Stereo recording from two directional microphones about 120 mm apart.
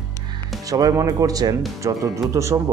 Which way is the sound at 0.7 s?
30° right (ahead or behind).